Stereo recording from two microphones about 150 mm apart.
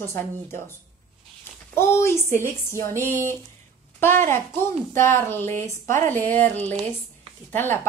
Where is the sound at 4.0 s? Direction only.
15° left (ahead or behind).